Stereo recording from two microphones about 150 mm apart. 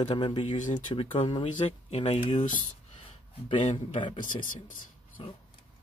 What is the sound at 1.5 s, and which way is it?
Speech, 45° left (ahead or behind).